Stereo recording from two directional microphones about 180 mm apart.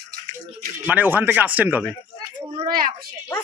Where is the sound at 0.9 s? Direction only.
10° right (ahead or behind).